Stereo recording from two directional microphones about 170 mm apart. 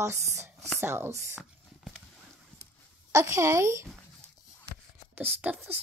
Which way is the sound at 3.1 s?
15° right (ahead or behind).